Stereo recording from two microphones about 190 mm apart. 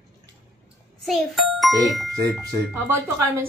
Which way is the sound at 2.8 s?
10° right (ahead or behind).